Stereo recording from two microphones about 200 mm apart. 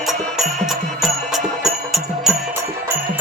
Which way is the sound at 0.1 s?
Centre (ahead or behind).